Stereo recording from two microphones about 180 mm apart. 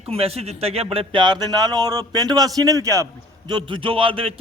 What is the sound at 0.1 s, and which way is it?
Speech, 35° right (ahead or behind).